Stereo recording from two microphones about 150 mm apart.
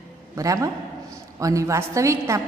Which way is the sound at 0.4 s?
20° right (ahead or behind).